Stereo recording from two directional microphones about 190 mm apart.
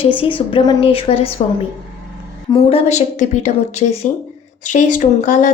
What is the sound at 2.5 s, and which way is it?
Speech, 25° left (ahead or behind).